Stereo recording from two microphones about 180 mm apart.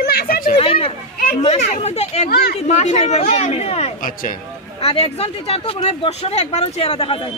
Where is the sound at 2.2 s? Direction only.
60° left (ahead or behind).